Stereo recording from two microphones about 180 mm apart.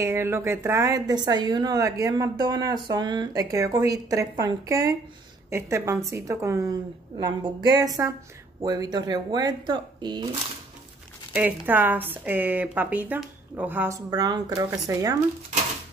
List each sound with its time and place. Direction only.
0.0 s speech: 15° right (ahead or behind)
11.3 s speech: 10° right (ahead or behind)